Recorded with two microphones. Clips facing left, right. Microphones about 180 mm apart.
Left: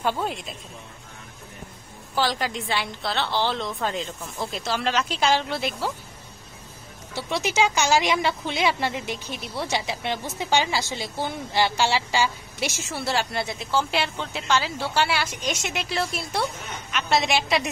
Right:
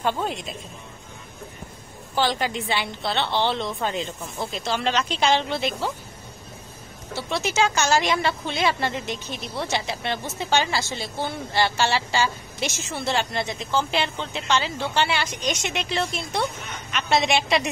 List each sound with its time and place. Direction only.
0.0 s a woman's voice: 5° left (ahead or behind)
2.1 s a woman's voice: centre (ahead or behind)
7.2 s a woman's voice: 15° left (ahead or behind)